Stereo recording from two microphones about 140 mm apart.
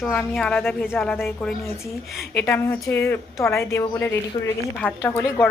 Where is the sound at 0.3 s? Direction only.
5° left (ahead or behind).